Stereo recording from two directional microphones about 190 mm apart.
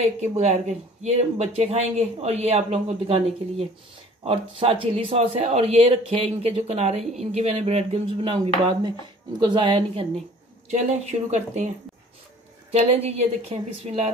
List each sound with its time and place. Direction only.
0.0 s speech: 35° right (ahead or behind)
9.4 s a woman's voice: 25° right (ahead or behind)
12.7 s speech: 35° right (ahead or behind)